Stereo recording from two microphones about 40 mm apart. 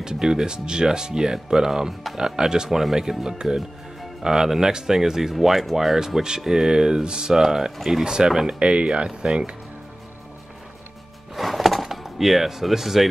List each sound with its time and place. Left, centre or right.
0.0 s speech: centre
8.0 s speech: centre
8.5 s speech: right
11.3 s a sound: centre